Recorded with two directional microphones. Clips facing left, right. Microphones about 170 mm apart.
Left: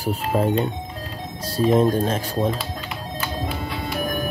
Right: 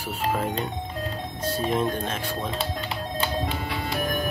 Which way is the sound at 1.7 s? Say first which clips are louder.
Left 10 dB; 35° left (ahead or behind).